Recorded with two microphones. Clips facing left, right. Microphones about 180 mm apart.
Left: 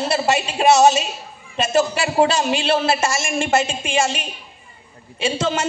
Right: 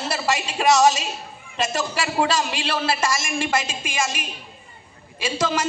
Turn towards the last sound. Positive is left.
turn(degrees=30)  # may be behind; listen again after turning